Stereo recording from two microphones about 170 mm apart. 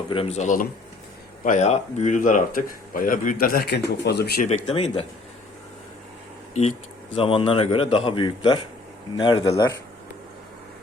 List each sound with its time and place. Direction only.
0.1 s a man's voice: 35° left (ahead or behind); by 4.4 s 70° left (ahead or behind)
4.4 s a man's voice: 35° left (ahead or behind)
6.5 s speech: 45° left (ahead or behind)
7.2 s a man's voice: 30° left (ahead or behind)